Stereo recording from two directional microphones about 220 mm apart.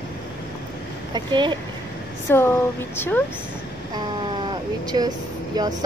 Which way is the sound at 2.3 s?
10° left (ahead or behind).